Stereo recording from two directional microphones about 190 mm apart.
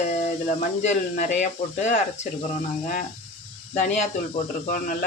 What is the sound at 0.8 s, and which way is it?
Speech, 40° left (ahead or behind).